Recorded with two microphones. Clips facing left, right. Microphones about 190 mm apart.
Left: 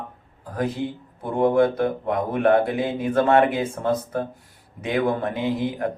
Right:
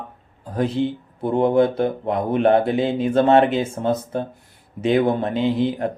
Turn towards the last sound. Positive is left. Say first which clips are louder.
# right 4 dB
turn(degrees=-25)  # may be behind; listen again after turning